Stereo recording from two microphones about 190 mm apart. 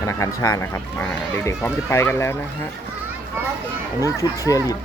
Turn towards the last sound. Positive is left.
turn(degrees=15)  # may be behind; listen again after turning